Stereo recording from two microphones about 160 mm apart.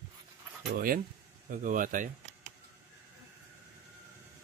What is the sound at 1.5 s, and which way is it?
Speech, 55° right (ahead or behind).